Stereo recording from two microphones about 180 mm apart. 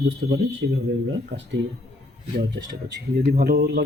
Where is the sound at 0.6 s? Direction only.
65° right (ahead or behind).